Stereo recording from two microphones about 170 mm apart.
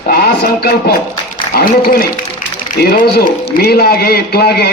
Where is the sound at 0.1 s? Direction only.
65° left (ahead or behind).